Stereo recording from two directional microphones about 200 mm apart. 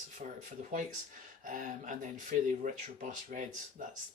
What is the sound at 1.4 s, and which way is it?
Speech, 40° right (ahead or behind).